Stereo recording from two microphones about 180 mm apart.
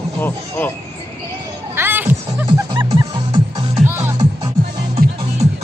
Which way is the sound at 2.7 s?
20° right (ahead or behind).